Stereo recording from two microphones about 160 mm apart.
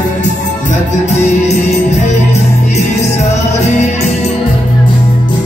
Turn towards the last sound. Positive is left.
turn(degrees=45)  # may be behind; listen again after turning